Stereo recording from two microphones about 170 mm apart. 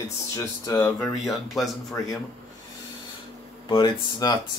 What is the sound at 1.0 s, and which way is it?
Speech, centre (ahead or behind).